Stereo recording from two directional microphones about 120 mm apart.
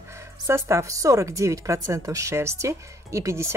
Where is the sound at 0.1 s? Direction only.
25° right (ahead or behind).